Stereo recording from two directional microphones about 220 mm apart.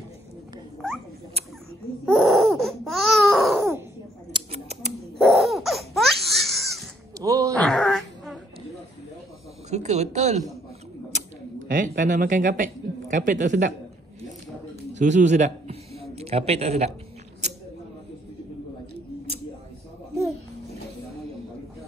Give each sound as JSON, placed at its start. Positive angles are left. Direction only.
{"t": 2.0, "sound": "baby cry", "side_deg": 0}
{"t": 4.3, "sound": "a sound", "side_deg": -30}
{"t": 5.2, "sound": "laughter", "side_deg": 0}
{"t": 7.2, "sound": "groan", "side_deg": -15}
{"t": 7.6, "sound": "wail", "side_deg": 0}
{"t": 9.7, "sound": "a sound", "side_deg": -30}
{"t": 15.0, "sound": "a man's voice", "side_deg": -35}